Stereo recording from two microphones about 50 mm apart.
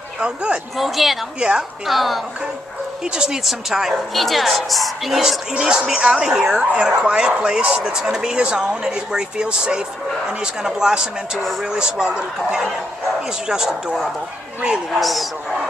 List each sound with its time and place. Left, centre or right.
0.2 s speech: right
0.7 s a woman's voice: centre
3.0 s a woman's voice: centre
13.5 s speech: centre
15.0 s a woman's voice: centre